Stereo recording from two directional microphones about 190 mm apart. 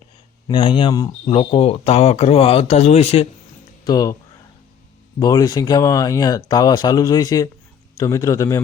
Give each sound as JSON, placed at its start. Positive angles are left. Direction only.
{"t": 0.4, "sound": "speech", "side_deg": 25}
{"t": 3.8, "sound": "speech", "side_deg": 20}
{"t": 5.2, "sound": "a man's voice", "side_deg": 20}